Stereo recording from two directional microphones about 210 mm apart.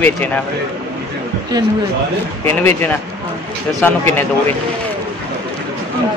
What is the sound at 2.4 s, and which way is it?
Speech, 10° left (ahead or behind).